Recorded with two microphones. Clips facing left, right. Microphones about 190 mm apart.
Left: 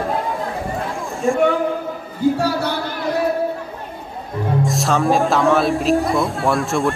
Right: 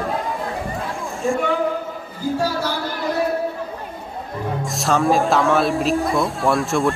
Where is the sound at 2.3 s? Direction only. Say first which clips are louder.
Left 2 dB; 65° left (ahead or behind).